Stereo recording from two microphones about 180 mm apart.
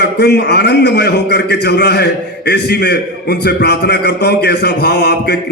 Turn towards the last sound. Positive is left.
turn(degrees=70)  # may be behind; listen again after turning